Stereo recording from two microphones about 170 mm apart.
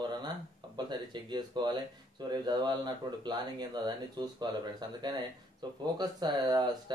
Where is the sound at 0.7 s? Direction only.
25° right (ahead or behind).